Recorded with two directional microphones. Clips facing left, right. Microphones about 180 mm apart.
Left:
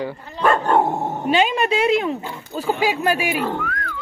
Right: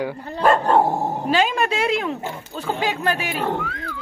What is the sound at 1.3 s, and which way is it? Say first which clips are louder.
Speech: left 3 dB; centre (ahead or behind).